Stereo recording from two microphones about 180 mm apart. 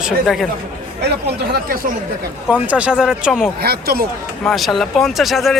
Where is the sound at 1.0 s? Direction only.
65° right (ahead or behind).